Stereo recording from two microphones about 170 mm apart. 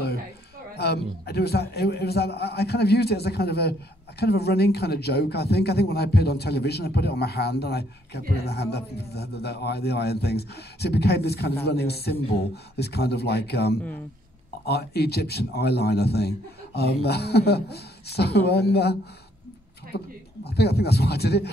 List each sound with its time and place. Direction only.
0.7 s a man's voice: 75° left (ahead or behind)